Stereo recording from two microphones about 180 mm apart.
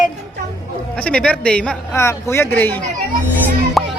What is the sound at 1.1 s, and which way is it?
A man's voice, 5° left (ahead or behind).